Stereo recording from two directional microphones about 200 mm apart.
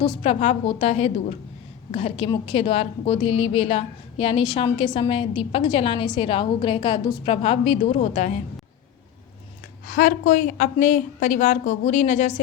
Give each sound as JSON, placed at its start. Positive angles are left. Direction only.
{"t": 0.2, "sound": "a woman's voice", "side_deg": 30}
{"t": 9.8, "sound": "a woman's voice", "side_deg": 45}